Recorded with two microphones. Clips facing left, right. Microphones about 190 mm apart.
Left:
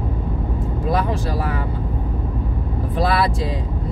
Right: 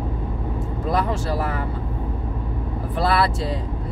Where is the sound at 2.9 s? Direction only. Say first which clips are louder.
Left 1 dB; 15° left (ahead or behind).